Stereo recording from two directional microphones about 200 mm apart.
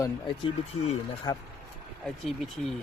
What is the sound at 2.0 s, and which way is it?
Speech, centre (ahead or behind).